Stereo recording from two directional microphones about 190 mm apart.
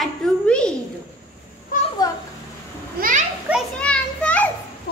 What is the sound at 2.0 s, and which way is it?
Speech, 20° left (ahead or behind).